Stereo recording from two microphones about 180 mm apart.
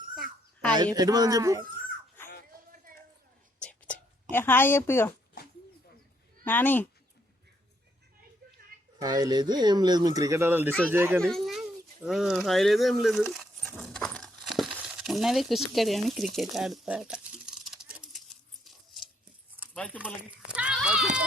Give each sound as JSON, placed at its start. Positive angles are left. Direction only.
{"t": 0.9, "sound": "speech", "side_deg": -20}
{"t": 3.6, "sound": "whispering", "side_deg": 5}
{"t": 6.4, "sound": "speech", "side_deg": 10}
{"t": 9.0, "sound": "speech", "side_deg": -20}
{"t": 11.2, "sound": "speech", "side_deg": 0}
{"t": 13.7, "sound": "a sound", "side_deg": 5}
{"t": 19.7, "sound": "speech", "side_deg": 10}
{"t": 20.5, "sound": "a sound", "side_deg": -5}